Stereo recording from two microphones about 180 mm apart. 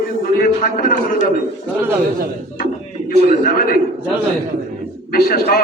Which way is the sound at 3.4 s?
55° left (ahead or behind).